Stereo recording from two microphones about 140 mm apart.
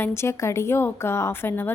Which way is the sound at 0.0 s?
20° left (ahead or behind).